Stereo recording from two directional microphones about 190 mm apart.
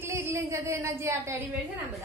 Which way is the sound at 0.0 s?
15° right (ahead or behind).